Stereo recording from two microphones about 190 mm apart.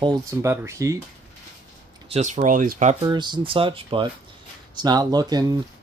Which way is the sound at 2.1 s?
40° right (ahead or behind).